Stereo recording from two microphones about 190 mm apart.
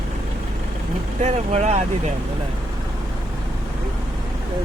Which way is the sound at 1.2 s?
35° right (ahead or behind).